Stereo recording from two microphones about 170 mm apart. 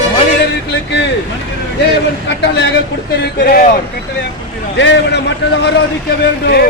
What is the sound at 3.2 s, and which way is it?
Speech, 60° left (ahead or behind).